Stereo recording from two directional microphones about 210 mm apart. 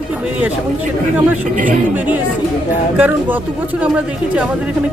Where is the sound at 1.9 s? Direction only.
10° right (ahead or behind).